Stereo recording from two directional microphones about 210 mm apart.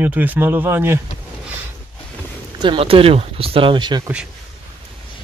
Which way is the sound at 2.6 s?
25° right (ahead or behind).